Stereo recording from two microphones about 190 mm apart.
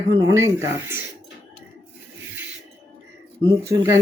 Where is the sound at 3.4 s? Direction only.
15° right (ahead or behind).